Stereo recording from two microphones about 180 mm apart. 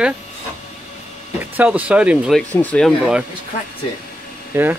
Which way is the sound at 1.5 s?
10° right (ahead or behind).